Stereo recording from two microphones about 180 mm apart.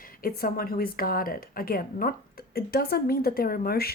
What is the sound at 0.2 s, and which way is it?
A woman's voice, 55° left (ahead or behind).